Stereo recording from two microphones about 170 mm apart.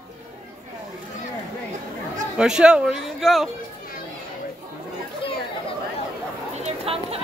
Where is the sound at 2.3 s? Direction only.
5° right (ahead or behind).